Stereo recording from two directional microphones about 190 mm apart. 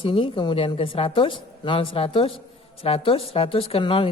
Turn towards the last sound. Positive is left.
turn(degrees=25)  # may be behind; listen again after turning